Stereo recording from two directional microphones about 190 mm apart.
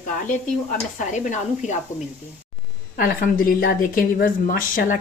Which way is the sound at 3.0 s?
50° left (ahead or behind).